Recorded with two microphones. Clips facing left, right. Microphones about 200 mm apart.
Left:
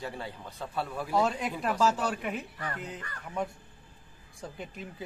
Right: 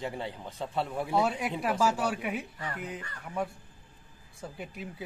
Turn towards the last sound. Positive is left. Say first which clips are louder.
# even
turn(degrees=-5)  # may be behind; listen again after turning